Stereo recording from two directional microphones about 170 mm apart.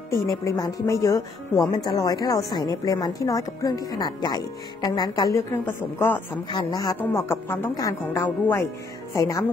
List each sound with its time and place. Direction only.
0.5 s speech: 20° left (ahead or behind)